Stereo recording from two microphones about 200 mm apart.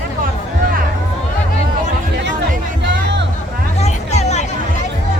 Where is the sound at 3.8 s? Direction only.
35° left (ahead or behind).